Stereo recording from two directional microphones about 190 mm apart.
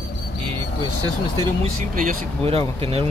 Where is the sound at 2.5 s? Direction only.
30° right (ahead or behind).